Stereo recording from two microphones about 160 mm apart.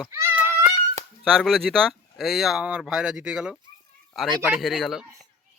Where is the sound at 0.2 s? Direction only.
15° right (ahead or behind).